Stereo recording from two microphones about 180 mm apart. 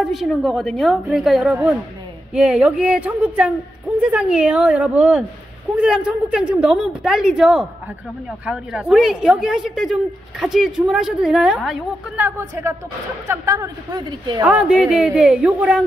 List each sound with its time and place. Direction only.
0.0 s a woman's voice: centre (ahead or behind); by 14.4 s 20° right (ahead or behind)
14.4 s a woman's voice: 5° right (ahead or behind)